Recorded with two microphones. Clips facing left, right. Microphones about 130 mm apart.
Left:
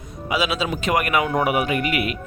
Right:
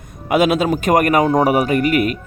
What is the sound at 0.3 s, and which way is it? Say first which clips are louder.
Speech: right 8 dB; 50° right (ahead or behind).